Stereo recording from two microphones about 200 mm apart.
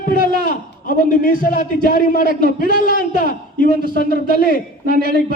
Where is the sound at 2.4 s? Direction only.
50° right (ahead or behind).